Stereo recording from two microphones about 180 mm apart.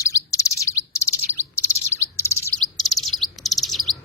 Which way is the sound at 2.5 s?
Centre (ahead or behind).